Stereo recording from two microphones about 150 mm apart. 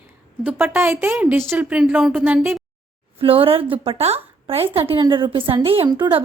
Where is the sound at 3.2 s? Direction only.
40° right (ahead or behind).